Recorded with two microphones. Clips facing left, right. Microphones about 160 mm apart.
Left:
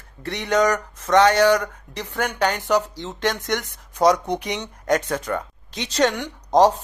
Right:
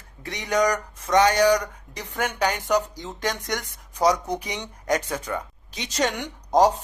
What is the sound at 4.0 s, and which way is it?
Speech, 60° left (ahead or behind).